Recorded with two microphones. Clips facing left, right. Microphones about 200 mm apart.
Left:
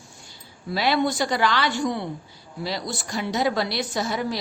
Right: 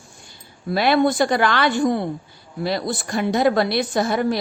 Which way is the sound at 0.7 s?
55° right (ahead or behind).